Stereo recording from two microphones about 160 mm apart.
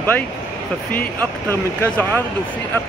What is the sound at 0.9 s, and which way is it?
Speech, 10° left (ahead or behind).